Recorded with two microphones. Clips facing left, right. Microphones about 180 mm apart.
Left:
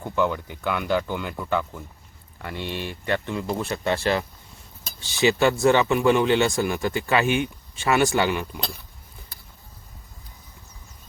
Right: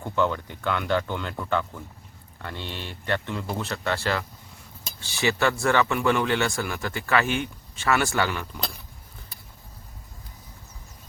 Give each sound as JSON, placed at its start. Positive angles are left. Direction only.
{"t": 0.0, "sound": "speech", "side_deg": 10}